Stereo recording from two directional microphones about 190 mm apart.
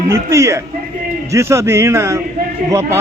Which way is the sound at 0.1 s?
15° right (ahead or behind).